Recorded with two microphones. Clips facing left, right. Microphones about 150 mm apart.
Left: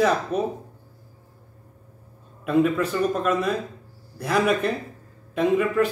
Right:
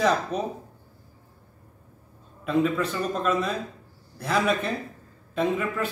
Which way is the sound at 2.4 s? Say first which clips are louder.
Left 3 dB; 5° left (ahead or behind).